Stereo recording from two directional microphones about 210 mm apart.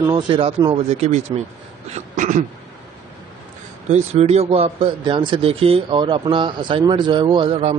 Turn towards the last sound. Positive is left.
turn(degrees=-25)  # may be behind; listen again after turning